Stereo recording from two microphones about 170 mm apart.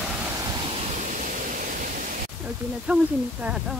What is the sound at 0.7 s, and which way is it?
Pink noise, 40° right (ahead or behind).